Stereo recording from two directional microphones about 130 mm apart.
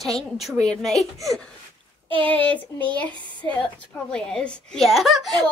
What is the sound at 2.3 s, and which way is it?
A woman's voice, 10° left (ahead or behind).